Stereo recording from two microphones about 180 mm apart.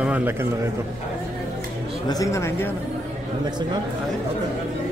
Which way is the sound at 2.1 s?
20° left (ahead or behind).